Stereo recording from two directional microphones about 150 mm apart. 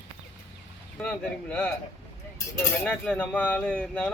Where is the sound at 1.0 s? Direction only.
10° left (ahead or behind).